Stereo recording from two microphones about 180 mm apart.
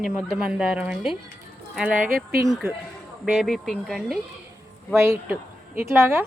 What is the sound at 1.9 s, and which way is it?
Speech, 50° right (ahead or behind).